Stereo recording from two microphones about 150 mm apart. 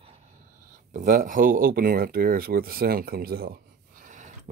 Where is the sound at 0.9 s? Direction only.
60° right (ahead or behind).